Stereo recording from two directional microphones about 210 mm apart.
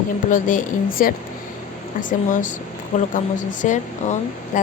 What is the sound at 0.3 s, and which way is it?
A woman's voice, 40° left (ahead or behind).